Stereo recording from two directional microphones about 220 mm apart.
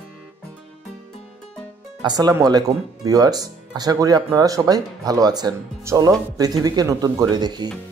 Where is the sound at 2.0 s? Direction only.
20° right (ahead or behind).